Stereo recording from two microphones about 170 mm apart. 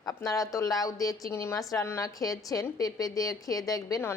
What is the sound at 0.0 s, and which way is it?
Speech, 20° left (ahead or behind).